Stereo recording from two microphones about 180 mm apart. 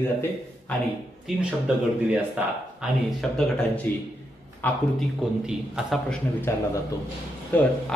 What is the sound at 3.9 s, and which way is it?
Speech, 10° left (ahead or behind).